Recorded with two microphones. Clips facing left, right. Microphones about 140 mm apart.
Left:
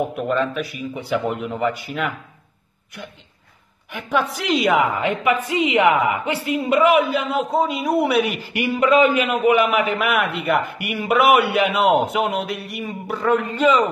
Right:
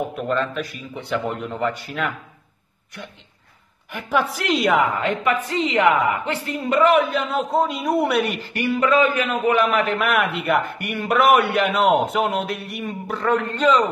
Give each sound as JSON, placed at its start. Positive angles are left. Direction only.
{"t": 0.1, "sound": "a man's voice", "side_deg": 10}
{"t": 3.9, "sound": "a man's voice", "side_deg": 0}
{"t": 8.5, "sound": "a man's voice", "side_deg": 15}